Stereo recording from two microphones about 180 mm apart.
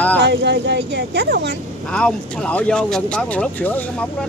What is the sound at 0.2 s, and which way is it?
Speech, 70° right (ahead or behind).